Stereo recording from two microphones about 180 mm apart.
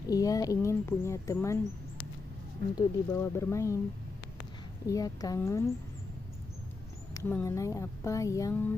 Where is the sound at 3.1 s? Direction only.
15° left (ahead or behind).